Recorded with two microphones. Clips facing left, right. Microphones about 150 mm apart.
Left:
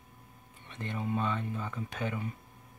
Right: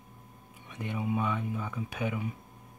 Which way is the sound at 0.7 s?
10° right (ahead or behind).